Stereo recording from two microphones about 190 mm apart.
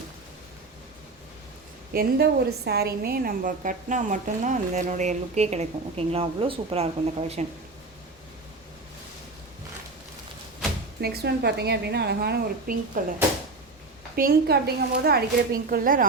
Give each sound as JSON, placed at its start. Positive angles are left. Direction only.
{"t": 1.9, "sound": "a woman's voice", "side_deg": -55}
{"t": 11.0, "sound": "a woman's voice", "side_deg": -55}
{"t": 14.2, "sound": "a woman's voice", "side_deg": -55}